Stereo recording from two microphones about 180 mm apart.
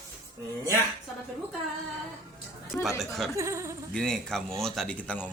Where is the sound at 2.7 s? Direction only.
Centre (ahead or behind).